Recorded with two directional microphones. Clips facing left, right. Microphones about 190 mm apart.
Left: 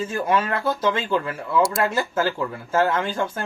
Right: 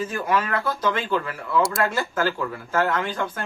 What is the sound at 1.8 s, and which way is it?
Speech, 25° left (ahead or behind).